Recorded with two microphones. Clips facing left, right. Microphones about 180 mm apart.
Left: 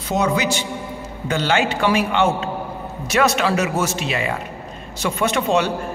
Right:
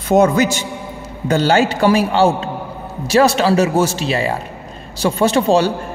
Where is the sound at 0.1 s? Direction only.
45° right (ahead or behind).